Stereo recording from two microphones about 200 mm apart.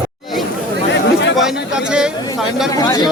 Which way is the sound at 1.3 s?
5° right (ahead or behind).